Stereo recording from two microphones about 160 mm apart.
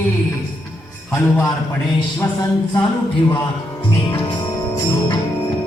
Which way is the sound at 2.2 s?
15° left (ahead or behind).